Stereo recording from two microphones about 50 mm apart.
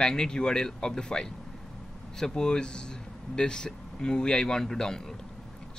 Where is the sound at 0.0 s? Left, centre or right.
Centre.